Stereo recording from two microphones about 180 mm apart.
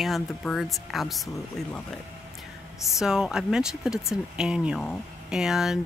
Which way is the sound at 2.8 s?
Centre (ahead or behind).